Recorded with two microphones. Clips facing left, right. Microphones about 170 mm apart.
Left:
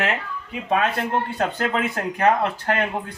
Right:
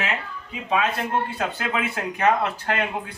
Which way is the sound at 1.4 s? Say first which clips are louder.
Left 3 dB; 45° left (ahead or behind).